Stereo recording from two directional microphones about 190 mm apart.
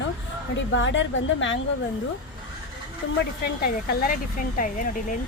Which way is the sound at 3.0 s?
65° left (ahead or behind).